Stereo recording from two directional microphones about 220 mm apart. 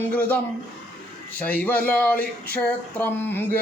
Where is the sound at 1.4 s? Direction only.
5° left (ahead or behind).